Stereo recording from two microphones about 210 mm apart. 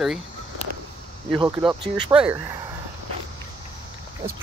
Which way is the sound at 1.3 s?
20° right (ahead or behind).